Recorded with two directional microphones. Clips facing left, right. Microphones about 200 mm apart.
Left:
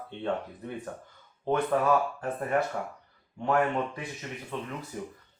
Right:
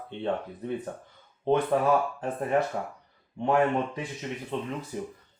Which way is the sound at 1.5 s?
20° right (ahead or behind).